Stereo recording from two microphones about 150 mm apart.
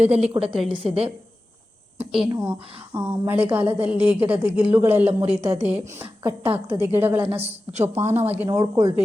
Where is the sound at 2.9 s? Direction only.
15° right (ahead or behind).